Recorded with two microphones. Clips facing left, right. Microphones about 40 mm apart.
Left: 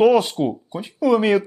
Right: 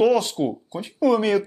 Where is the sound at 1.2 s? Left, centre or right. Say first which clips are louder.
Left 3 dB; centre.